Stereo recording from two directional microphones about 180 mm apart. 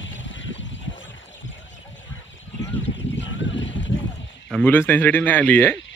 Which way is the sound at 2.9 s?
90° left.